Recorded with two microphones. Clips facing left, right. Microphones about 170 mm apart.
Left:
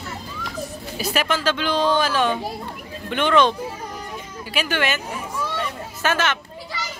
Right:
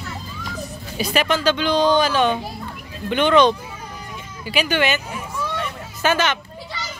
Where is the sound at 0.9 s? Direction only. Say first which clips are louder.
Right 3 dB; 5° left (ahead or behind).